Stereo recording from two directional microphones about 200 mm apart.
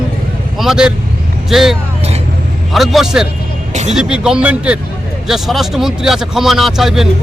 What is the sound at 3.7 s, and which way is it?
Speech, 35° right (ahead or behind).